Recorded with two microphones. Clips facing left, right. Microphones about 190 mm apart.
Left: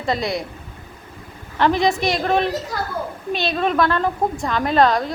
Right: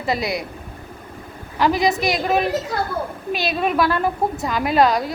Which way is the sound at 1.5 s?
5° right (ahead or behind).